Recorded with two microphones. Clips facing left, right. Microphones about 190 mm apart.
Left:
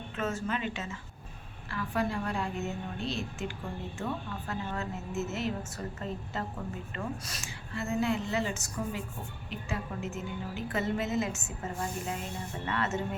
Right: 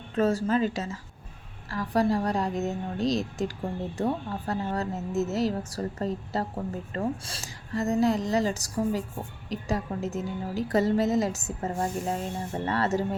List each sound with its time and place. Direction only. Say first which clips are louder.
0.2 s a woman's voice: right 9 dB; 35° right (ahead or behind)